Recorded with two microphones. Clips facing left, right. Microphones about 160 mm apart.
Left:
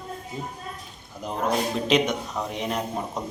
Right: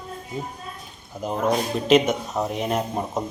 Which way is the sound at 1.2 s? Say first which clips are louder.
Right 5 dB; 5° right (ahead or behind).